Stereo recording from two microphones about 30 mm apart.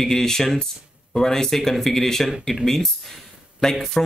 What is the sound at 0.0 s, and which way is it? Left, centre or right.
Speech, centre.